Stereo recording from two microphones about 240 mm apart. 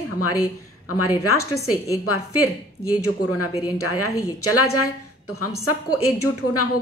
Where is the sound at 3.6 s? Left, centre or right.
Left.